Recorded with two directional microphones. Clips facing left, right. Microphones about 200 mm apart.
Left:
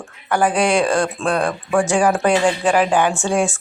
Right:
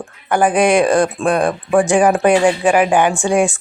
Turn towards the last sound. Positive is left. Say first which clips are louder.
# right 4 dB
turn(degrees=-15)  # may be behind; listen again after turning